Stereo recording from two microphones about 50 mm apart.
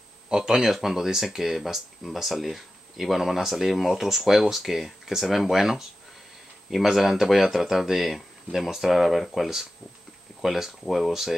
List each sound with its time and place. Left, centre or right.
0.5 s speech: centre